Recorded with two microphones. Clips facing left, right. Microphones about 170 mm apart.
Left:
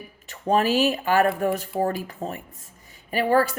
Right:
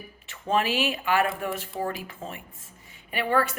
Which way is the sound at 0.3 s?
40° left (ahead or behind).